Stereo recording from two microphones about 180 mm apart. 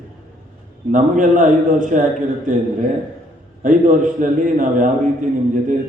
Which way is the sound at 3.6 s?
45° right (ahead or behind).